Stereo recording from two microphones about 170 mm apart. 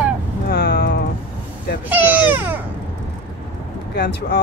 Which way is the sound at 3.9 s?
75° left (ahead or behind).